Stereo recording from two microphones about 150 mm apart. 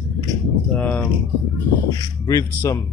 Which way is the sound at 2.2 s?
25° left (ahead or behind).